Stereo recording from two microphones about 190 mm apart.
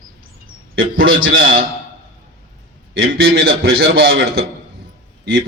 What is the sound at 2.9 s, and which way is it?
A man's voice, 55° right (ahead or behind).